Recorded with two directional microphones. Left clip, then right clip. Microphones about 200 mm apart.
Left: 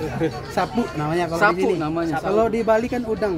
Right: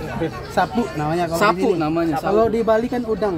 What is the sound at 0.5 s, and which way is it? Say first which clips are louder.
Speech: right 5 dB; 10° right (ahead or behind).